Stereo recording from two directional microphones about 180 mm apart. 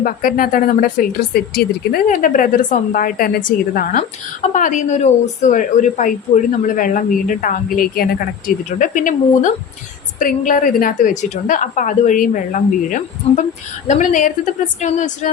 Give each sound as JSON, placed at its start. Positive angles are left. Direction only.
{"t": 0.0, "sound": "speech", "side_deg": 50}